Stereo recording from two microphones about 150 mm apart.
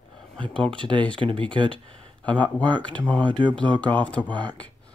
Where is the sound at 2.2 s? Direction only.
10° left (ahead or behind).